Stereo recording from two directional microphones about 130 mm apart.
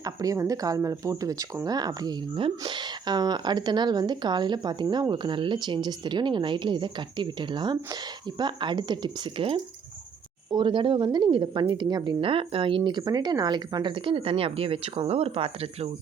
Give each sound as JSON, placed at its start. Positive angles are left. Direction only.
{"t": 0.0, "sound": "speech", "side_deg": -25}
{"t": 10.5, "sound": "speech", "side_deg": -40}